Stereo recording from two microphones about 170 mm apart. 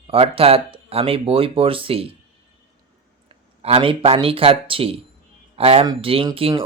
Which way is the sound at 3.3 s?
35° right (ahead or behind).